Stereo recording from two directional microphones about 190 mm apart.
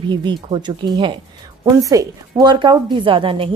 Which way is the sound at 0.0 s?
25° right (ahead or behind).